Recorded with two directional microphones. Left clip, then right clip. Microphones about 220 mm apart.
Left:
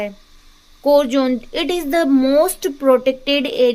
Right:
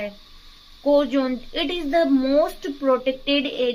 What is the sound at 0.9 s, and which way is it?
Speech, 45° left (ahead or behind).